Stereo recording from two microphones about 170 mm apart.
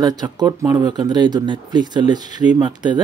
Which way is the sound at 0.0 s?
20° right (ahead or behind).